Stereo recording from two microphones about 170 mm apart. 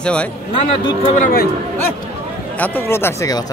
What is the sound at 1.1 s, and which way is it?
Speech, 50° left (ahead or behind).